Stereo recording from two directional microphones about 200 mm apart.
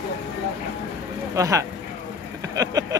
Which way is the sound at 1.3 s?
15° right (ahead or behind).